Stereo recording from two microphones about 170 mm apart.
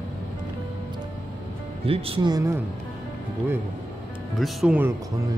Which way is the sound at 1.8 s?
35° right (ahead or behind).